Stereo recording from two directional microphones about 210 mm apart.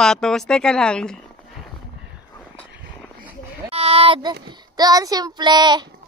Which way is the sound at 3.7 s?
30° right (ahead or behind).